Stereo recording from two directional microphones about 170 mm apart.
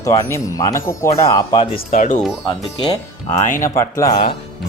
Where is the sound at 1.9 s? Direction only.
50° left (ahead or behind).